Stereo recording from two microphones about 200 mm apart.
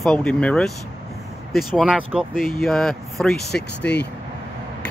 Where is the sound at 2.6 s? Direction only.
Centre (ahead or behind).